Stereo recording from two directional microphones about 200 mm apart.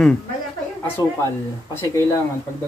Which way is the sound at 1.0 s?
15° left (ahead or behind).